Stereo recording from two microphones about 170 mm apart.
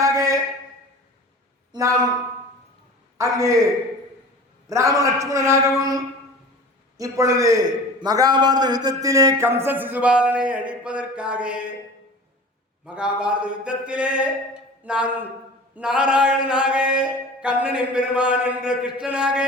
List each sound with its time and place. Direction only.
0.0 s a sound: 20° right (ahead or behind)
1.7 s a man's voice: 20° right (ahead or behind)
3.2 s a man's voice: 20° right (ahead or behind)
4.7 s a man's voice: 20° right (ahead or behind)
12.8 s mantra: 5° right (ahead or behind)